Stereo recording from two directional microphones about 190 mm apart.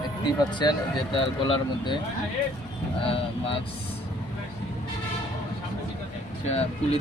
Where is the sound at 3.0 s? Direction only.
30° left (ahead or behind).